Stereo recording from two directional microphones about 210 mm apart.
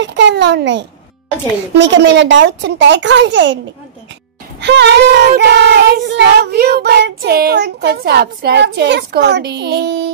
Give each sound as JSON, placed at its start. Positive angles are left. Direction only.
{"t": 0.0, "sound": "a child's voice", "side_deg": -55}
{"t": 4.6, "sound": "child singing", "side_deg": -55}